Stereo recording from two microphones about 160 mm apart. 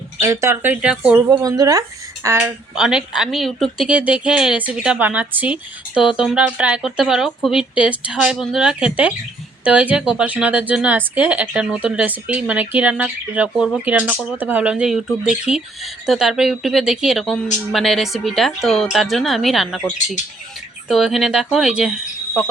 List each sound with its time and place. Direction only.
0.2 s a woman's voice: 15° right (ahead or behind)
1.3 s a woman's voice: 25° right (ahead or behind)
2.7 s a woman's voice: 5° right (ahead or behind)
20.8 s speech: centre (ahead or behind)